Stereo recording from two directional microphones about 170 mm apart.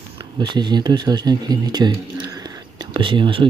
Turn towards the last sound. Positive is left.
turn(degrees=-30)  # may be behind; listen again after turning